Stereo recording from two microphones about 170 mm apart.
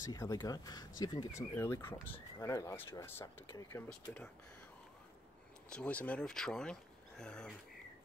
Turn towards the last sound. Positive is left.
turn(degrees=5)  # may be behind; listen again after turning